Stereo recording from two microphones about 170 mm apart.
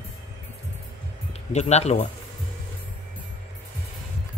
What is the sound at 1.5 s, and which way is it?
Speech, 40° left (ahead or behind).